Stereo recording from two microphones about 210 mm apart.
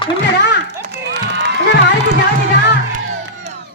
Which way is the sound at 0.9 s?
55° right (ahead or behind).